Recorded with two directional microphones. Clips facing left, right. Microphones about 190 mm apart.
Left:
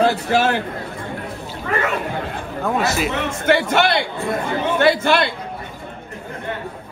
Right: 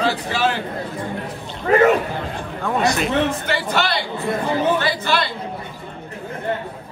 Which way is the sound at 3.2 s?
50° left (ahead or behind).